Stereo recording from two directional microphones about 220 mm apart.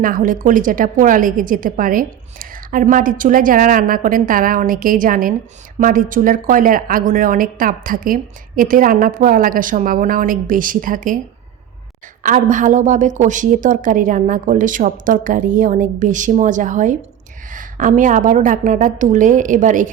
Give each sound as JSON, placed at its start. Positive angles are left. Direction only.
{"t": 0.0, "sound": "a woman's voice", "side_deg": -40}
{"t": 12.2, "sound": "a woman's voice", "side_deg": -35}